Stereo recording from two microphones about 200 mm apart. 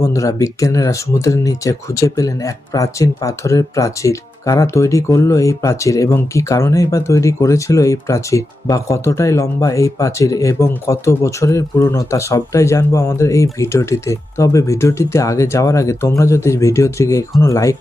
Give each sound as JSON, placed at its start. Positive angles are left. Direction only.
{"t": 0.0, "sound": "speech", "side_deg": 15}